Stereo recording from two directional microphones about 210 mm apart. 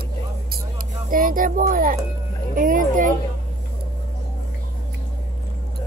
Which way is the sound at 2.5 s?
40° right (ahead or behind).